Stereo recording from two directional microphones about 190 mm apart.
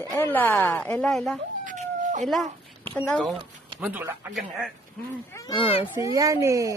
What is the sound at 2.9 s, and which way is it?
Speech, 5° left (ahead or behind).